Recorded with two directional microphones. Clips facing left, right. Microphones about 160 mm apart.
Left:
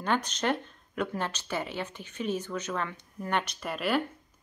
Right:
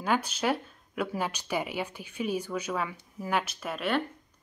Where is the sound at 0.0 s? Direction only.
5° right (ahead or behind).